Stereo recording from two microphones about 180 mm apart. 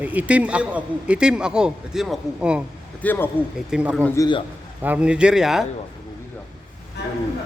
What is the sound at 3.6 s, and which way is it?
Speech, 5° right (ahead or behind).